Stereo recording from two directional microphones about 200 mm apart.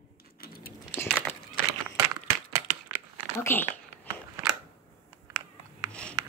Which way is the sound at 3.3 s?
10° left (ahead or behind).